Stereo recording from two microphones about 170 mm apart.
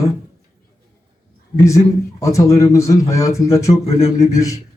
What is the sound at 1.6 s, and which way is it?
A man's voice, 20° left (ahead or behind).